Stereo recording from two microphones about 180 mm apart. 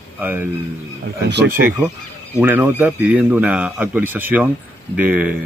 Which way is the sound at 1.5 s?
10° right (ahead or behind).